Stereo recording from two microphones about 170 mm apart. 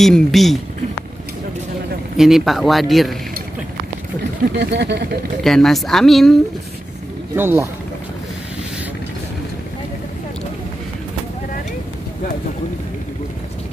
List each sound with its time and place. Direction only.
0.0 s speech: centre (ahead or behind)
2.1 s speech: centre (ahead or behind)
4.6 s speech: 85° right; by 5.2 s 65° right (ahead or behind)
5.4 s speech: centre (ahead or behind)
7.3 s speech: 15° right (ahead or behind)